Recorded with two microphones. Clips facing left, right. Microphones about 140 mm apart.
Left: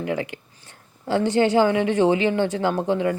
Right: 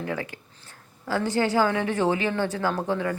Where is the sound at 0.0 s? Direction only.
20° left (ahead or behind).